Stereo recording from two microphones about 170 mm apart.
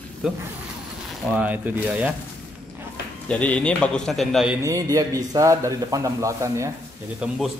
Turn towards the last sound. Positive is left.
turn(degrees=-5)  # may be behind; listen again after turning